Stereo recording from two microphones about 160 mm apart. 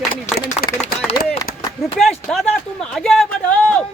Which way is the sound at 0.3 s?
70° left (ahead or behind).